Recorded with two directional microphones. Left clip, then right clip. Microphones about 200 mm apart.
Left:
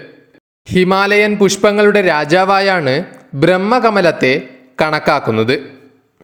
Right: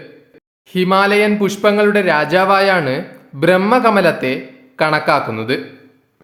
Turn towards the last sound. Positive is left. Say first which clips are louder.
# left 3 dB
turn(degrees=35)  # may be behind; listen again after turning